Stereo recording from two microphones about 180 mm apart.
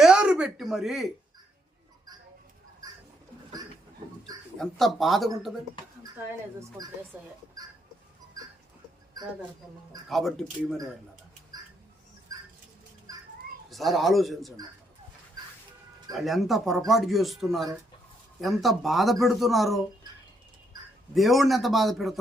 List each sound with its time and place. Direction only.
0.0 s a sound: 5° right (ahead or behind)
2.8 s bird: 20° right (ahead or behind)
4.5 s speech: centre (ahead or behind)
6.6 s speech: 20° right (ahead or behind)
7.1 s speech: 10° right (ahead or behind)
10.1 s speech: centre (ahead or behind)
13.7 s speech: centre (ahead or behind)
16.1 s speech: centre (ahead or behind)
21.2 s speech: centre (ahead or behind)